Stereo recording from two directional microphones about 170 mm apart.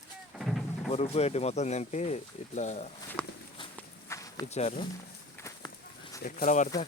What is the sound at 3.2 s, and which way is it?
Walk, 5° left (ahead or behind).